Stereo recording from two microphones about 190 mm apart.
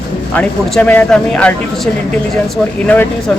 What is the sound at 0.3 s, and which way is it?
Speech, 5° left (ahead or behind).